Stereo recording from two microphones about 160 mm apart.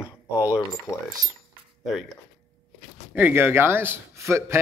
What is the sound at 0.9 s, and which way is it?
Speech, 20° left (ahead or behind).